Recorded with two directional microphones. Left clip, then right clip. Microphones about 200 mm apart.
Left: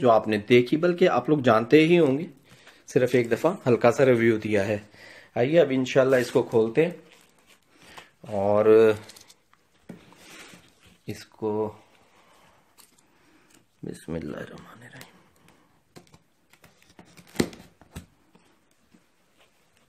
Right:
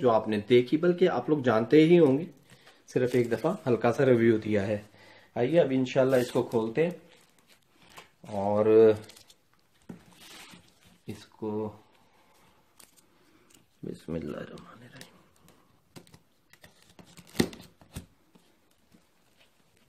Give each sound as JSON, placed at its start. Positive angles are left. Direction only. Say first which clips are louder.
{"t": 0.0, "sound": "speech", "louder": "left 5 dB", "side_deg": 45}
{"t": 8.3, "sound": "speech", "louder": "left 5 dB", "side_deg": 50}
{"t": 11.3, "sound": "speech", "louder": "left 6 dB", "side_deg": 50}
{"t": 13.8, "sound": "speech", "louder": "left 2 dB", "side_deg": 25}
{"t": 14.6, "sound": "a sound", "louder": "left 4 dB", "side_deg": 25}
{"t": 16.9, "sound": "a sound", "louder": "left 2 dB", "side_deg": -5}